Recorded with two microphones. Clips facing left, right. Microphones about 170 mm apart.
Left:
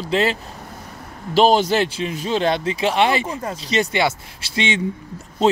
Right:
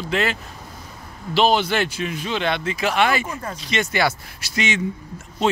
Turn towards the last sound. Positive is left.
turn(degrees=35)  # may be behind; listen again after turning